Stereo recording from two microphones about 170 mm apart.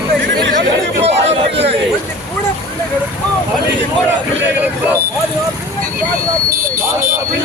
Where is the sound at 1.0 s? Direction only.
35° right (ahead or behind).